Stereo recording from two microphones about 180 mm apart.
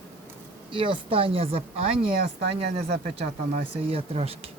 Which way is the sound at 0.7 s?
30° right (ahead or behind).